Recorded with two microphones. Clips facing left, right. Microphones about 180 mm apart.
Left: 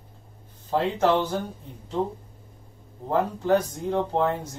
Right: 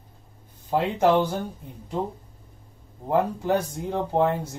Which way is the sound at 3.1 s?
10° right (ahead or behind).